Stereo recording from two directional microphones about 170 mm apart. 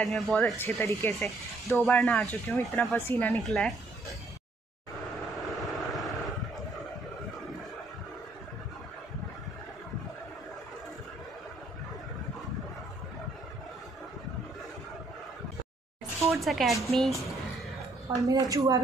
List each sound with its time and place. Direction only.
0.0 s speech: 5° left (ahead or behind)
1.9 s speech: 5° left (ahead or behind)
5.5 s vehicle: centre (ahead or behind)
16.3 s speech: centre (ahead or behind)
18.1 s a woman's voice: 20° right (ahead or behind)